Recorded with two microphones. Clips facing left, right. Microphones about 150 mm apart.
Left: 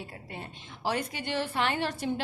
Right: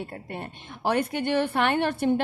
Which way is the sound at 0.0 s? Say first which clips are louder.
Right 6 dB; 60° right (ahead or behind).